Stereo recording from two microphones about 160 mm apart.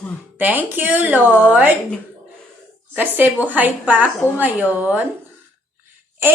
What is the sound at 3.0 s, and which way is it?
Speech, 10° right (ahead or behind).